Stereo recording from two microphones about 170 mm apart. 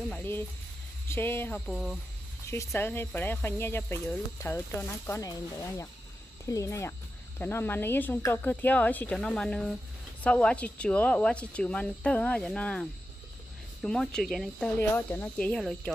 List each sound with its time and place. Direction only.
0.1 s speech: 10° left (ahead or behind)
1.7 s speech: centre (ahead or behind)
2.4 s speech: 15° left (ahead or behind)
13.8 s speech: 5° left (ahead or behind)